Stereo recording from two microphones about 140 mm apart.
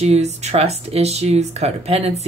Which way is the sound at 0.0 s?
50° right (ahead or behind).